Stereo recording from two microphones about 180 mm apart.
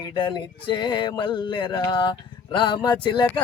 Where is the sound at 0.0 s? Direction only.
25° left (ahead or behind).